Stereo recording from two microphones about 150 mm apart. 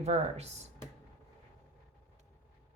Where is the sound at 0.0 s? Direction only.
45° right (ahead or behind).